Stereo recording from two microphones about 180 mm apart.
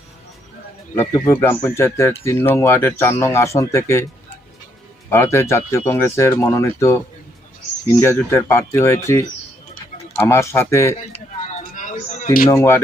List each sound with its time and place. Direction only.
0.9 s speech: 15° left (ahead or behind)
8.0 s speech: 15° left (ahead or behind)
11.1 s a sound: 40° left (ahead or behind)
12.5 s speech: 15° left (ahead or behind)